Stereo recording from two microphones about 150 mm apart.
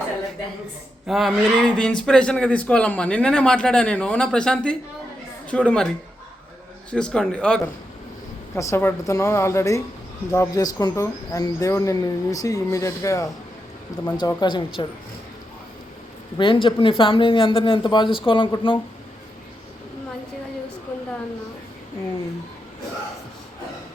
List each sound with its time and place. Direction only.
1.0 s a man's voice: centre (ahead or behind)
6.9 s speech: 5° left (ahead or behind); by 14.8 s 30° left (ahead or behind)
16.4 s speech: 35° left (ahead or behind)